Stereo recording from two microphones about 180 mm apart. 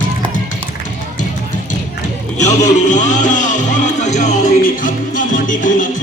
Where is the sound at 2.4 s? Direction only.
40° left (ahead or behind).